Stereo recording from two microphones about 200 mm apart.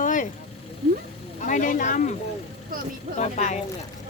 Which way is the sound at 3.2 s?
35° left (ahead or behind).